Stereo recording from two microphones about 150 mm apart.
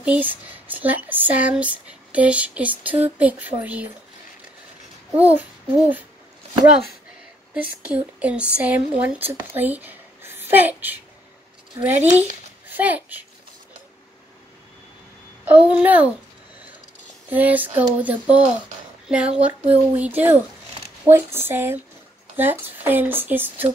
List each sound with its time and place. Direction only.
0.0 s speech: 10° right (ahead or behind)
5.1 s babbling: 10° right (ahead or behind)
7.8 s speech: 10° right (ahead or behind)
12.0 s a child's voice: 10° right (ahead or behind)
15.4 s speech: 10° right (ahead or behind)
17.3 s speech: 10° right (ahead or behind)